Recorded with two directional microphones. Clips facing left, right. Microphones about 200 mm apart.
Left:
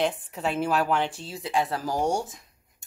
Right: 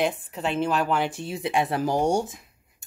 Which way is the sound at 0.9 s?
10° right (ahead or behind).